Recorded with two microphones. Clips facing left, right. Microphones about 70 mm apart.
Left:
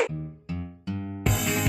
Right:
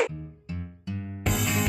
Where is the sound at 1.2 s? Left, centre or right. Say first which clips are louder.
Even; centre.